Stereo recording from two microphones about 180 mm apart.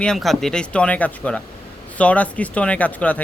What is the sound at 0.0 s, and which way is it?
Speech, centre (ahead or behind).